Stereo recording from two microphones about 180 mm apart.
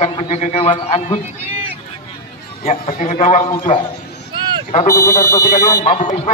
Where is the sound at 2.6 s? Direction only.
40° left (ahead or behind).